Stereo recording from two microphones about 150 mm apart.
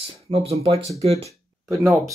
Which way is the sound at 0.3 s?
40° right (ahead or behind).